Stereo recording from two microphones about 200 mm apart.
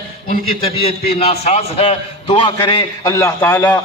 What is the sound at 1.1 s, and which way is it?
A man's voice, 30° left (ahead or behind).